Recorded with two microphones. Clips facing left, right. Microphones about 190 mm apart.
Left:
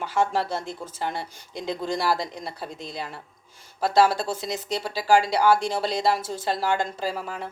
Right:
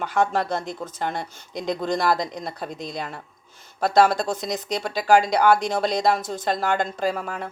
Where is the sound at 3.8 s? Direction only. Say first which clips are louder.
Right 2 dB; 5° left (ahead or behind).